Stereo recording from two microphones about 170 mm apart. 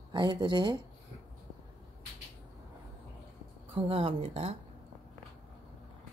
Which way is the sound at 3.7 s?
35° right (ahead or behind).